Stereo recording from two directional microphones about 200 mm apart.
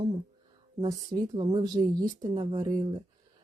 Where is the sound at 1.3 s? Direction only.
25° right (ahead or behind).